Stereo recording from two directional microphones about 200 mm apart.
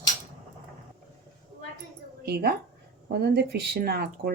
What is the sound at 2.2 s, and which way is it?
Speech, 50° right (ahead or behind).